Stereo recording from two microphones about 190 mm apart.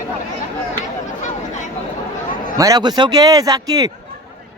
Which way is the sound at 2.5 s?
20° right (ahead or behind).